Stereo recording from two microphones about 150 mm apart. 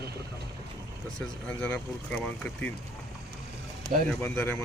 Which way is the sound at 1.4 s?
10° left (ahead or behind).